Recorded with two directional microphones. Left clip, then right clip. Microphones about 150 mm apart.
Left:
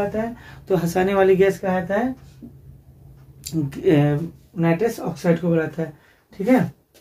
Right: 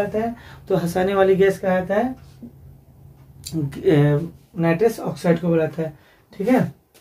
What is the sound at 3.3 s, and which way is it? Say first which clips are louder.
Speech: left 1 dB; 20° left (ahead or behind).